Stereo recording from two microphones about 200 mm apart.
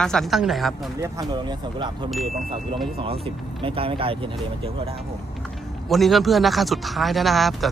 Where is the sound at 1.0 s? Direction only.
20° right (ahead or behind).